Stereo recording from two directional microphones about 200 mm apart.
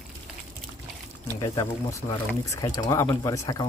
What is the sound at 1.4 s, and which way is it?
Speech, 15° left (ahead or behind).